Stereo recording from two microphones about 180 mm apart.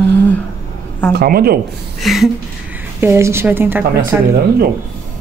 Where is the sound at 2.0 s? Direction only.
Centre (ahead or behind).